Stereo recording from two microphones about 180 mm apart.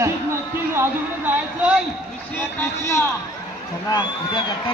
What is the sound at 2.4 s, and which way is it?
Speech, 15° left (ahead or behind).